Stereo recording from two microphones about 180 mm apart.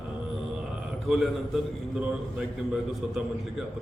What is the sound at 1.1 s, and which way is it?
A man's voice, centre (ahead or behind).